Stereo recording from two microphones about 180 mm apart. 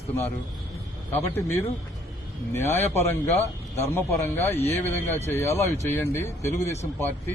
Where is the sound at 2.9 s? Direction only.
15° left (ahead or behind).